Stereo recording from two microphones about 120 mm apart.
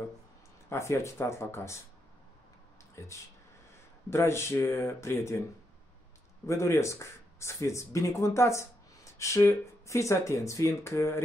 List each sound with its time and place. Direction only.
0.7 s speech: 20° left (ahead or behind)
3.0 s speech: 25° left (ahead or behind)
6.4 s speech: 25° left (ahead or behind)